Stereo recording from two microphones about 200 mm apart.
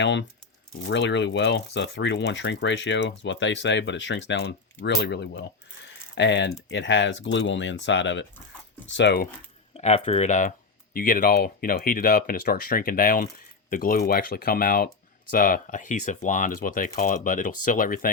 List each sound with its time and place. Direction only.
0.0 s speech: 60° left (ahead or behind)
9.7 s speech: 35° left (ahead or behind)